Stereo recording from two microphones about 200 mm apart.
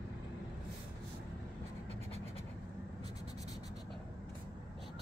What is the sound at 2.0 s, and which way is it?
Scratch, 30° right (ahead or behind).